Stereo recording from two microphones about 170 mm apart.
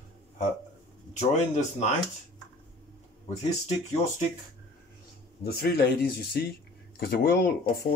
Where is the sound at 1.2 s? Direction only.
40° left (ahead or behind).